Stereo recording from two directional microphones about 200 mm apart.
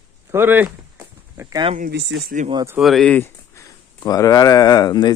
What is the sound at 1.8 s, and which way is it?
Speech, 55° right (ahead or behind).